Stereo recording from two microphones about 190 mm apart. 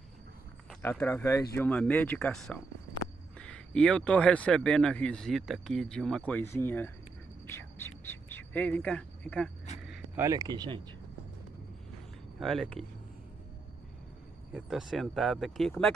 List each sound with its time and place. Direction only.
0.8 s speech: 10° left (ahead or behind)
7.5 s a sound: 10° left (ahead or behind)
9.8 s speech: 15° right (ahead or behind)
12.4 s speech: centre (ahead or behind)
14.5 s speech: centre (ahead or behind)